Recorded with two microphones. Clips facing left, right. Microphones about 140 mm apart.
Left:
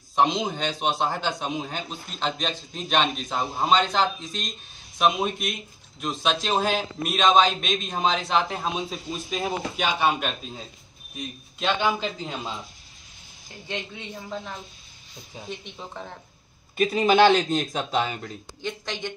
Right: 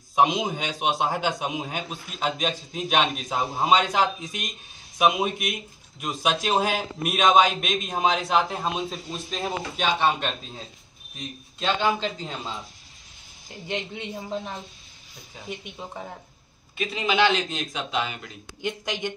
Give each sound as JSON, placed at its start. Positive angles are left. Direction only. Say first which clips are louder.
{"t": 0.1, "sound": "a man's voice", "louder": "right 1 dB", "side_deg": -10}
{"t": 11.6, "sound": "speech", "louder": "even", "side_deg": 0}
{"t": 13.7, "sound": "a man's voice", "louder": "right 3 dB", "side_deg": -30}
{"t": 15.4, "sound": "a man's voice", "louder": "right 2 dB", "side_deg": -5}
{"t": 16.7, "sound": "a man's voice", "louder": "left 6 dB", "side_deg": 40}
{"t": 18.6, "sound": "a man's voice", "louder": "right 3 dB", "side_deg": -10}